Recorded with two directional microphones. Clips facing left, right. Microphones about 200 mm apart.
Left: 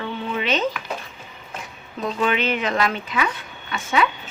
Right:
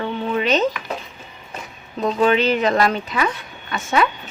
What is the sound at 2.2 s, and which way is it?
Speech, 40° right (ahead or behind).